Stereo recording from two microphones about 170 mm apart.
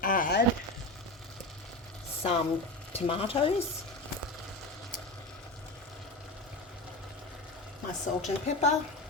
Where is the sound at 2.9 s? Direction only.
35° left (ahead or behind).